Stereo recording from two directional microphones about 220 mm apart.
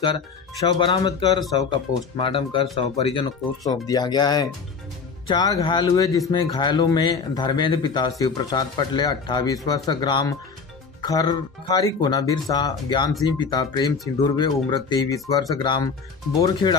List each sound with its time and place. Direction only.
0.0 s speech: 20° left (ahead or behind)